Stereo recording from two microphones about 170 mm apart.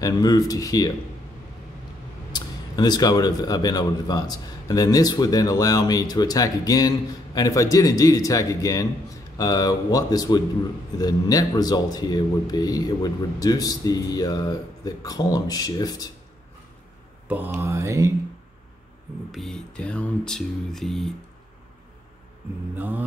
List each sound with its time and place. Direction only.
0.0 s speech: 20° left (ahead or behind)
2.3 s speech: 25° left (ahead or behind)
17.6 s mantra: 15° right (ahead or behind)
19.3 s a sound: centre (ahead or behind)
22.8 s mantra: 10° right (ahead or behind)